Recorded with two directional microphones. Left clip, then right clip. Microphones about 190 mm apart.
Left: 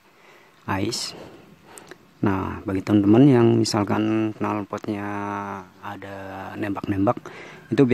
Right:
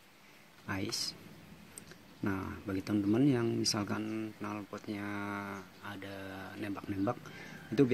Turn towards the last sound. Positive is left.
turn(degrees=30)  # may be behind; listen again after turning